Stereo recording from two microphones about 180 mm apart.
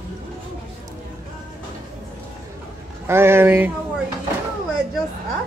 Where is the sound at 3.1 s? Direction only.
15° right (ahead or behind).